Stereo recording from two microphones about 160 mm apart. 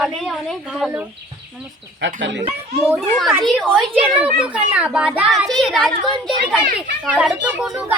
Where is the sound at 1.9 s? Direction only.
90° right.